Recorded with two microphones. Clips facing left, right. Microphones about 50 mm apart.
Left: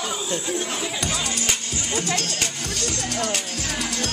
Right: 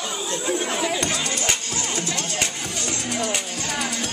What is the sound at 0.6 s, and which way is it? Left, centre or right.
Speech, right.